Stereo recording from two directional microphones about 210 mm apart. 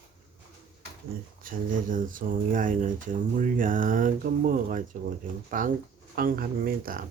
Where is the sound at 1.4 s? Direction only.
40° right (ahead or behind).